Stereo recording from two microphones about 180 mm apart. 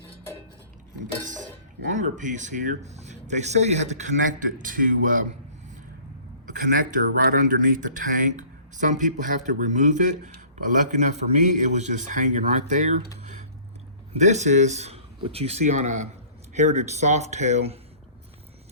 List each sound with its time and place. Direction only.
1.9 s speech: 45° right (ahead or behind)
6.6 s speech: 50° right (ahead or behind)
14.2 s speech: 40° right (ahead or behind)